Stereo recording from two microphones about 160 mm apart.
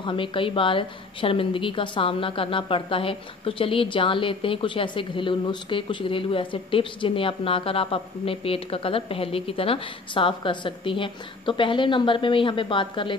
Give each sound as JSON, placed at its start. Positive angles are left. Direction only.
{"t": 0.0, "sound": "a woman's voice", "side_deg": 30}